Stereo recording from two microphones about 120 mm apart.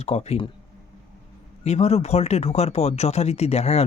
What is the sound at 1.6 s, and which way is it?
Speech, 65° left (ahead or behind).